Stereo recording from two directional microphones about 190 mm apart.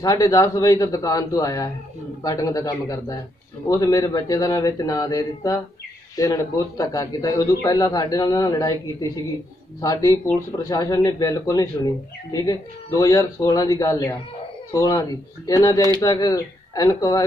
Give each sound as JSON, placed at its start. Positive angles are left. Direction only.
{"t": 0.0, "sound": "a man's voice", "side_deg": 20}
{"t": 9.8, "sound": "a man's voice", "side_deg": 20}